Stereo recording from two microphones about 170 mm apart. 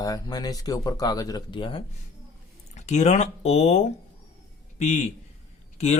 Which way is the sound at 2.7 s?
45° left (ahead or behind).